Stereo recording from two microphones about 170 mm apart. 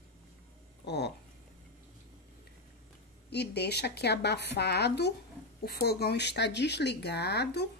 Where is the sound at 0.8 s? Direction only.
80° left.